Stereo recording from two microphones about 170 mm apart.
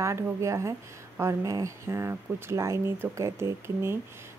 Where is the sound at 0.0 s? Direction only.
15° right (ahead or behind).